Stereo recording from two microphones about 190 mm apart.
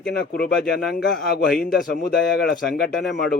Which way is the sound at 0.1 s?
55° left (ahead or behind).